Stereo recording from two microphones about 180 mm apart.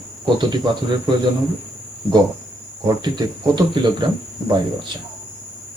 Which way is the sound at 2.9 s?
25° right (ahead or behind).